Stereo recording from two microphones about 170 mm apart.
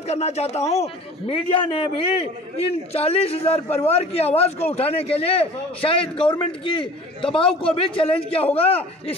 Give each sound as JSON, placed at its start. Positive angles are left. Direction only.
{"t": 0.1, "sound": "a man's voice", "side_deg": 40}